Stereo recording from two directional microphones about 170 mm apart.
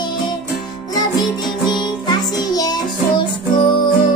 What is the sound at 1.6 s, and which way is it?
Music, 25° left (ahead or behind).